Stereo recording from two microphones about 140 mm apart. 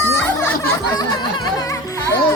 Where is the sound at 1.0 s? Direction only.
30° left (ahead or behind).